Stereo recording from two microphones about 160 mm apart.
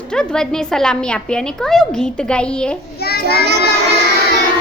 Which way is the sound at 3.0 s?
75° left (ahead or behind).